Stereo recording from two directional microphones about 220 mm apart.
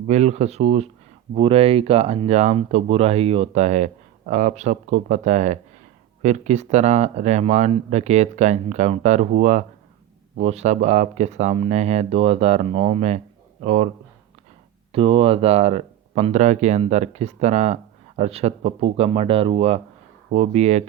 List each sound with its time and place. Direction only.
0.1 s speech: 30° right (ahead or behind)
14.9 s speech: 25° right (ahead or behind)